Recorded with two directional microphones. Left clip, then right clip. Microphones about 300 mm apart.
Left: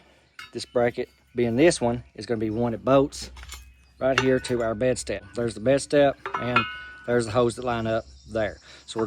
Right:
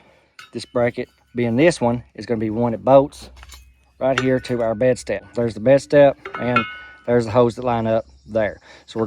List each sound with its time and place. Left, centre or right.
0.5 s speech: right
3.9 s speech: right